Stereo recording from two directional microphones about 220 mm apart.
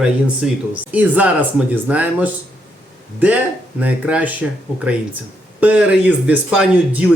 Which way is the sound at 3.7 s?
5° right (ahead or behind).